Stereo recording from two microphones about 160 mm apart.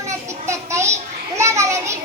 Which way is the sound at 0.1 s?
20° right (ahead or behind).